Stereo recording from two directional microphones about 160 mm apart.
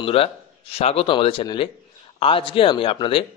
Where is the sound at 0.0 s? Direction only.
35° left (ahead or behind).